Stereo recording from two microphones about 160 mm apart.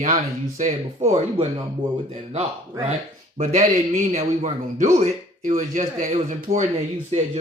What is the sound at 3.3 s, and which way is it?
Speech, 50° right (ahead or behind).